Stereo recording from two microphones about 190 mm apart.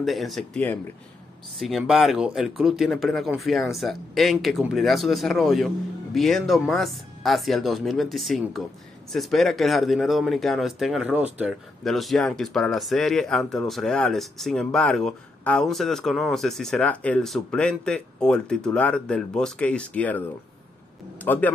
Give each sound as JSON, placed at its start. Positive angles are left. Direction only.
{"t": 0.0, "sound": "a man's voice", "side_deg": 0}